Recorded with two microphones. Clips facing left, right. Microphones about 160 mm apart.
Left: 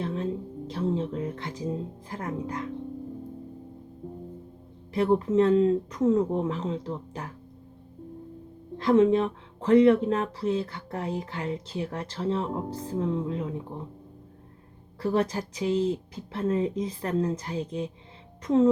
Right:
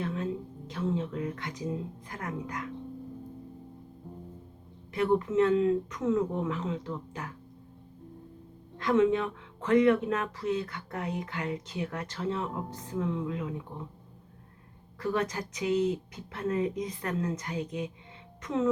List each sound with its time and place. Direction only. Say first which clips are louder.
0.0 s a sound: left 3 dB; 30° left (ahead or behind)
0.7 s speech: left 3 dB; 30° left (ahead or behind)
4.9 s speech: left 3 dB; 30° left (ahead or behind)
8.8 s speech: left 4 dB; 35° left (ahead or behind)
15.0 s speech: left 4 dB; 30° left (ahead or behind)